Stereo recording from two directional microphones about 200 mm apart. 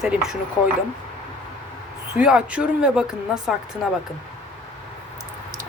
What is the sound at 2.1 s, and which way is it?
Speech, 5° right (ahead or behind).